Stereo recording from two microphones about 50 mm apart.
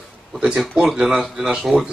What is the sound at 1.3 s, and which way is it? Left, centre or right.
Speech, centre.